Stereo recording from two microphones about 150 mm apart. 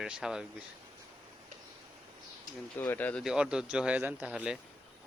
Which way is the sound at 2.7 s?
10° left (ahead or behind).